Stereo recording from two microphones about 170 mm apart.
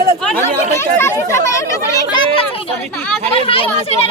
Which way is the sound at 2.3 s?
35° left (ahead or behind).